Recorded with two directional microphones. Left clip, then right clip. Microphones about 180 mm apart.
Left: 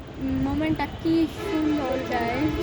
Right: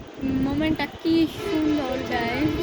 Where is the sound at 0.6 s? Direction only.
10° right (ahead or behind).